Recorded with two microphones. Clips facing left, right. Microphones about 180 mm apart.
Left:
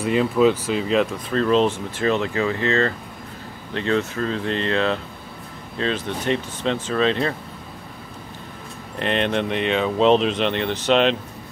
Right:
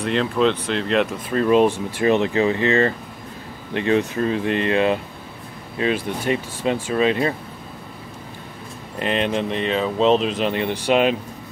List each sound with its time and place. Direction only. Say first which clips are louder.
0.0 s speech: left 2 dB; 5° left (ahead or behind); by 7.3 s 10° right (ahead or behind)
9.0 s speech: even; 5° right (ahead or behind)